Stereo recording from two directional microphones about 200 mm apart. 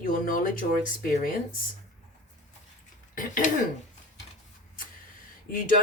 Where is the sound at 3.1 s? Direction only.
40° left (ahead or behind).